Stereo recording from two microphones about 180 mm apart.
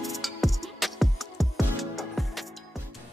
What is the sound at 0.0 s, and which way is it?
Music, centre (ahead or behind).